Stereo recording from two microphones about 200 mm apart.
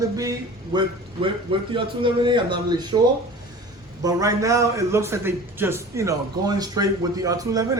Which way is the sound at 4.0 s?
15° right (ahead or behind).